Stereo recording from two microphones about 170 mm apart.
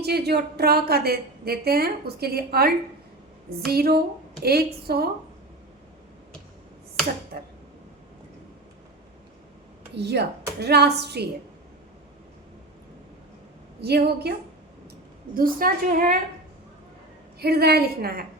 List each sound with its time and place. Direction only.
0.0 s a woman's voice: 75° right (ahead or behind)
9.9 s a woman's voice: 80° right
13.8 s a woman's voice: 70° right (ahead or behind)
15.4 s a woman's voice: 55° right (ahead or behind)
17.4 s a woman's voice: 70° right (ahead or behind)